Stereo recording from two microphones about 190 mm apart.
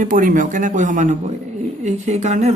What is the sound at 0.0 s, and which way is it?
Speech, 45° right (ahead or behind).